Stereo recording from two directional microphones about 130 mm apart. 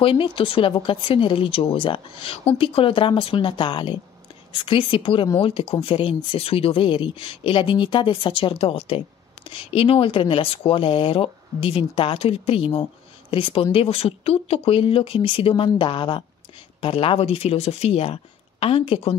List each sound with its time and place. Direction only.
0.0 s a woman's voice: 40° left (ahead or behind)